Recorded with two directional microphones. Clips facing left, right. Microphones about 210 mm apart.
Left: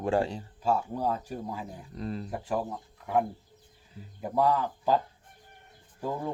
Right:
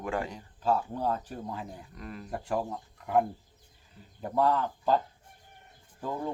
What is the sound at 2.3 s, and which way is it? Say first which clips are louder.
Speech: right 3 dB; centre (ahead or behind).